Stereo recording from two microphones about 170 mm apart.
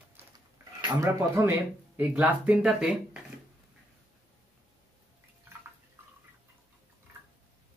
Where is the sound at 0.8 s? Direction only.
20° right (ahead or behind).